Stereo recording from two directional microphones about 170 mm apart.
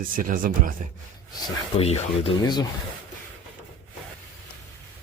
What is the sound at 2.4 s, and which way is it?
Speech, 25° left (ahead or behind).